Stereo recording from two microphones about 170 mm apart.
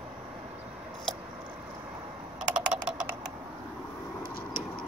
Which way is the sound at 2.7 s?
5° right (ahead or behind).